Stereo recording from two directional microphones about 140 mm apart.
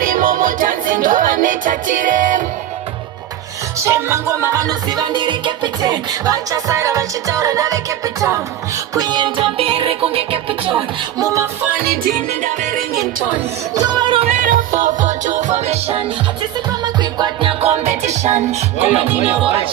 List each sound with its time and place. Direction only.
0.0 s music: 85° right; by 2.4 s 70° right (ahead or behind)
3.8 s music: 20° right (ahead or behind); by 10.8 s 40° right (ahead or behind)
13.7 s music: 30° right (ahead or behind)
14.3 s music: 65° right (ahead or behind); by 16.0 s 50° right (ahead or behind)
16.8 s music: 30° right (ahead or behind)
17.6 s music: 50° right (ahead or behind)
18.9 s music: 10° right (ahead or behind)